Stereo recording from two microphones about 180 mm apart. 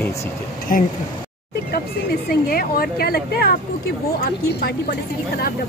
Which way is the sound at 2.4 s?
55° left (ahead or behind).